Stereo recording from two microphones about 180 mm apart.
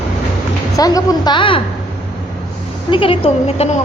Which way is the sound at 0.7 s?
20° left (ahead or behind).